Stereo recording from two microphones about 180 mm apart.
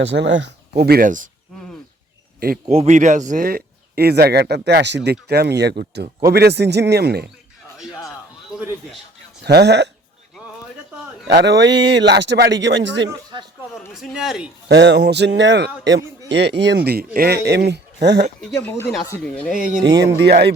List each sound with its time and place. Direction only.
0.0 s speech: 80° right
0.8 s speech: 60° right (ahead or behind)
2.6 s speech: 40° right (ahead or behind); by 5.1 s 75° right (ahead or behind)
5.3 s speech: 65° right (ahead or behind)
8.5 s a man's voice: 5° right (ahead or behind)
9.4 s a man's voice: 65° right (ahead or behind)
11.3 s a man's voice: 70° right (ahead or behind)
13.9 s a man's voice: 5° right (ahead or behind)
14.7 s a man's voice: 70° right (ahead or behind)
18.5 s speech: 15° left (ahead or behind)
20.0 s a man's voice: 75° right (ahead or behind)